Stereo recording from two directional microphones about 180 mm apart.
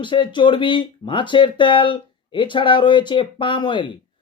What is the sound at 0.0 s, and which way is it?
Speech, 25° left (ahead or behind).